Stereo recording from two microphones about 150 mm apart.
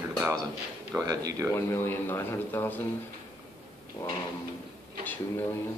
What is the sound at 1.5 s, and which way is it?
A man's voice, 15° left (ahead or behind).